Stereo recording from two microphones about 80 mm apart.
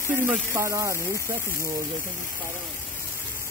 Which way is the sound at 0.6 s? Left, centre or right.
Right.